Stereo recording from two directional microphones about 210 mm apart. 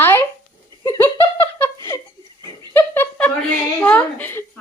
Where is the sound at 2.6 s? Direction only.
10° left (ahead or behind).